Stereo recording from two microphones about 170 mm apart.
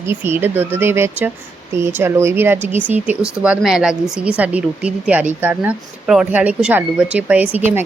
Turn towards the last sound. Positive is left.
turn(degrees=-10)  # may be behind; listen again after turning